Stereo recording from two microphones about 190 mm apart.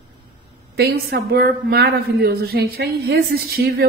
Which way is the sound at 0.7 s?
55° right (ahead or behind).